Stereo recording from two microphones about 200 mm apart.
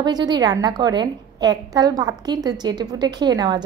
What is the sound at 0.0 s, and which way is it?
A woman's voice, 20° right (ahead or behind).